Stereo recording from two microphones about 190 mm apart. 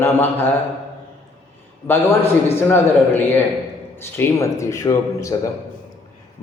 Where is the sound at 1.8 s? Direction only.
10° left (ahead or behind).